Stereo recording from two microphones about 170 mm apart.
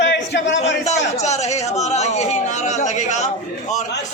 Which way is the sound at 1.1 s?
40° left (ahead or behind).